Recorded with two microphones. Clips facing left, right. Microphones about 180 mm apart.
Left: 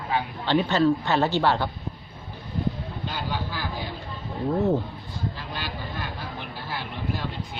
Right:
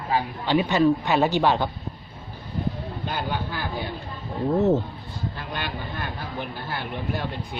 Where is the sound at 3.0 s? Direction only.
55° right (ahead or behind).